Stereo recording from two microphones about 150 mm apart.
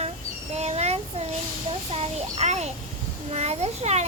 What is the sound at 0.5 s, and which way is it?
A child's voice, 45° right (ahead or behind).